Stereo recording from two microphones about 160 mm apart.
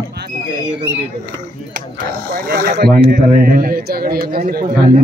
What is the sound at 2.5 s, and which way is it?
Speech, 70° right (ahead or behind).